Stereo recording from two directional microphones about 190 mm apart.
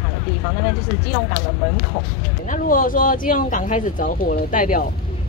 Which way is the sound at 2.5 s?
45° left (ahead or behind).